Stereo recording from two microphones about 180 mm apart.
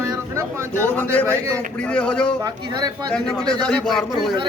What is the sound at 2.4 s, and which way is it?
Speech, 20° right (ahead or behind).